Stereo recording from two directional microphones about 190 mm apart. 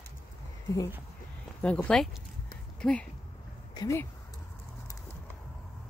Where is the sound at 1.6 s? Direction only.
5° left (ahead or behind).